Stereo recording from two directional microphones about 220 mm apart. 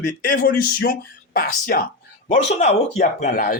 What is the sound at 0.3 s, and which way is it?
Speech, 40° left (ahead or behind).